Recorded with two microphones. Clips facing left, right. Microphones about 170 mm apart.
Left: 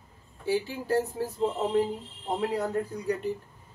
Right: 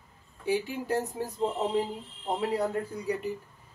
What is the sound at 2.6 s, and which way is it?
Speech, 10° right (ahead or behind).